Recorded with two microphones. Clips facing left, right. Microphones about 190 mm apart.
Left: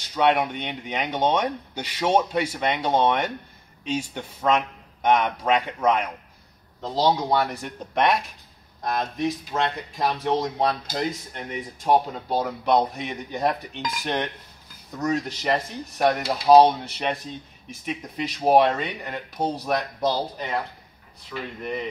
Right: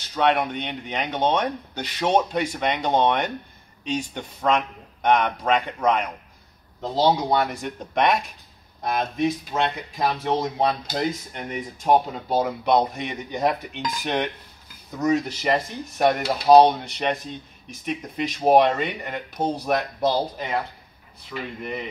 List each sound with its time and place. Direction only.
0.1 s speech: 5° left (ahead or behind)